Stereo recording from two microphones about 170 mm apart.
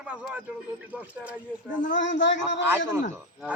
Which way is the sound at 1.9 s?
90° left.